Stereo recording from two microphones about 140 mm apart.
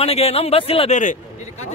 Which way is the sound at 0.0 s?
45° left (ahead or behind).